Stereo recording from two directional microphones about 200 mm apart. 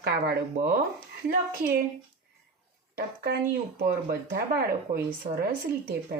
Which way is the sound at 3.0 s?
50° right (ahead or behind).